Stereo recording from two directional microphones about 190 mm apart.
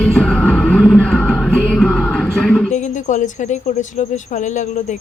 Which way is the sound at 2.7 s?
40° left (ahead or behind).